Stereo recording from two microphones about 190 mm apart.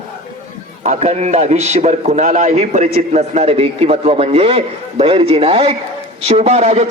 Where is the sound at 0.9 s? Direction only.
35° right (ahead or behind).